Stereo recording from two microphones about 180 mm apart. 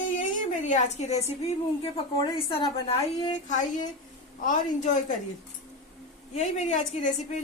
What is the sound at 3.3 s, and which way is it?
A woman's voice, 45° left (ahead or behind).